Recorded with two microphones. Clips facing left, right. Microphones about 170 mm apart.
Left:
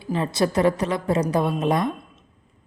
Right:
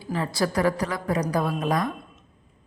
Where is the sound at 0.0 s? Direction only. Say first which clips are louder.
Left 3 dB; 20° left (ahead or behind).